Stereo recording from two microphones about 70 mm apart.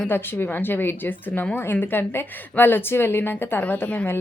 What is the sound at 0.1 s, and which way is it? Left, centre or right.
A woman's voice, left.